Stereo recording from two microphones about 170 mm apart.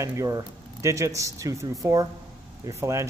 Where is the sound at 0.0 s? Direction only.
20° right (ahead or behind).